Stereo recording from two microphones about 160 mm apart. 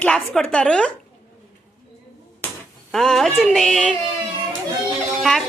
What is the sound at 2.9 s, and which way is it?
Music, centre (ahead or behind).